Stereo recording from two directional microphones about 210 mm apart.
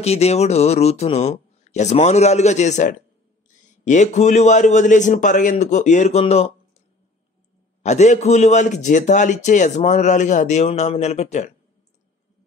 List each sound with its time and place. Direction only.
0.0 s a man's voice: 30° left (ahead or behind)
7.8 s a man's voice: 35° left (ahead or behind)